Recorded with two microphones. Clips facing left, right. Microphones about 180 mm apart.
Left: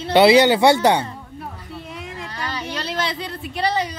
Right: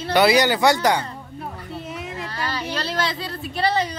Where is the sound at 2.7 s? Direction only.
20° left (ahead or behind).